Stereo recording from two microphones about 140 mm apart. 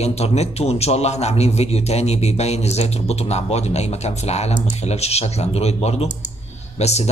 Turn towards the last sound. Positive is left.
turn(degrees=50)  # may be behind; listen again after turning